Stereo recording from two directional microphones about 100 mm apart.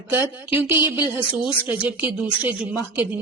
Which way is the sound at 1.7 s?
15° right (ahead or behind).